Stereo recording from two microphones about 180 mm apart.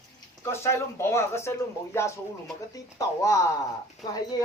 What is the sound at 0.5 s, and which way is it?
Speech, 15° left (ahead or behind).